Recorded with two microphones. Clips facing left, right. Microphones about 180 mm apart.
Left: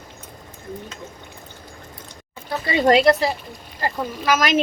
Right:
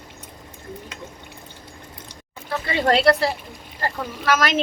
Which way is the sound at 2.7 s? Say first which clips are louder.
Left 3 dB; 15° left (ahead or behind).